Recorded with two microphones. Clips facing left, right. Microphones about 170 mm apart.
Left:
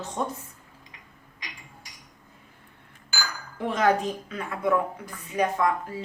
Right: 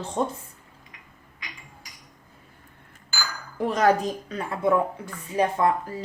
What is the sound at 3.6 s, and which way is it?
A woman's voice, 40° right (ahead or behind).